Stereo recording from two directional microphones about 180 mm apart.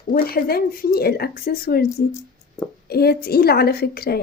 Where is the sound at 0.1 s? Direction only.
55° left (ahead or behind).